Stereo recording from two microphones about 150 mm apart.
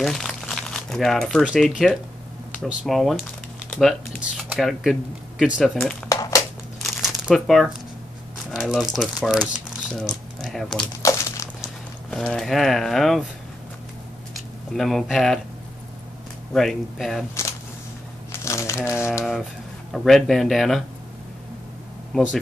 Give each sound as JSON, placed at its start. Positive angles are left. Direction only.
{"t": 0.0, "sound": "speech", "side_deg": 0}
{"t": 6.8, "sound": "crumpling", "side_deg": 0}
{"t": 8.5, "sound": "speech", "side_deg": 0}
{"t": 11.0, "sound": "a sound", "side_deg": 20}
{"t": 11.6, "sound": "speech", "side_deg": 0}
{"t": 14.3, "sound": "speech", "side_deg": 0}
{"t": 16.5, "sound": "speech", "side_deg": 0}
{"t": 18.3, "sound": "crumpling", "side_deg": 20}
{"t": 19.9, "sound": "speech", "side_deg": 0}